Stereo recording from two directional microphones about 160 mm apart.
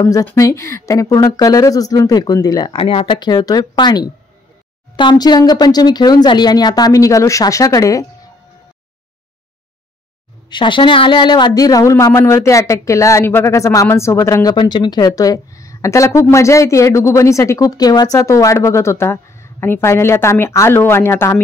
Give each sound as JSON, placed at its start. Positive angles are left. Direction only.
{"t": 0.0, "sound": "speech", "side_deg": 20}
{"t": 10.5, "sound": "speech", "side_deg": 30}